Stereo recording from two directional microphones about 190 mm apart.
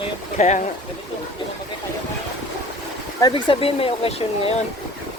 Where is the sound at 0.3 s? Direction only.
40° left (ahead or behind).